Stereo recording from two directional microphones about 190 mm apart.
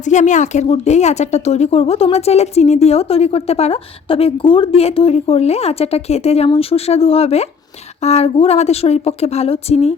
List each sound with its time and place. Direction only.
0.0 s a woman's voice: 40° left (ahead or behind)